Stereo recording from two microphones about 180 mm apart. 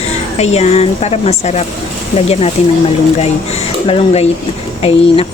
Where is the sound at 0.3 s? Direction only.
35° left (ahead or behind).